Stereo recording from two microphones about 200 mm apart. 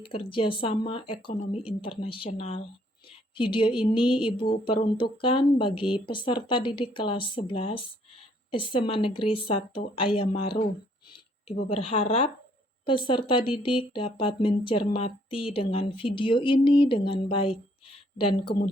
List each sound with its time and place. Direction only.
0.0 s speech: 25° left (ahead or behind)
11.7 s speech: 30° left (ahead or behind)